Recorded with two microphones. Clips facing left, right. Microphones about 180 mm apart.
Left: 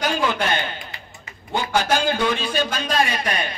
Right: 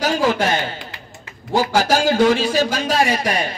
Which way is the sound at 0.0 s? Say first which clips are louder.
Right 4 dB; 85° right.